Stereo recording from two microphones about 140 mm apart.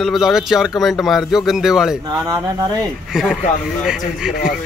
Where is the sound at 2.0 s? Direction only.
30° right (ahead or behind).